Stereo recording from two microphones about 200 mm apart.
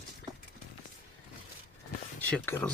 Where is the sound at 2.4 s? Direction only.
10° left (ahead or behind).